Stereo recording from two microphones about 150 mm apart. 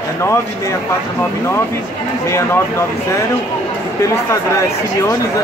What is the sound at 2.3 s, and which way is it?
Speech, 20° left (ahead or behind).